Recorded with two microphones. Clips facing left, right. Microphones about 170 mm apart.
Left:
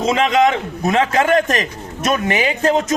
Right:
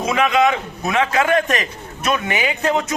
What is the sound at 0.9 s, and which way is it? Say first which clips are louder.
A man's voice: left 2 dB; 40° left (ahead or behind).